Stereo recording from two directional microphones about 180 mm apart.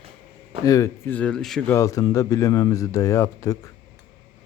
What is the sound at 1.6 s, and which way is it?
A man's voice, 15° left (ahead or behind).